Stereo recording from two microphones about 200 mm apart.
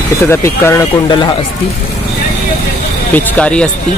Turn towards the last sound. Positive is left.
turn(degrees=5)  # may be behind; listen again after turning